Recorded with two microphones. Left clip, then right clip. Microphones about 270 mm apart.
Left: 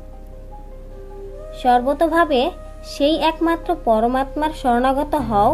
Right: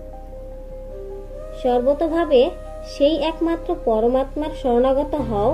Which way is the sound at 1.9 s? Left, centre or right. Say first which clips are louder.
Left 1 dB; left.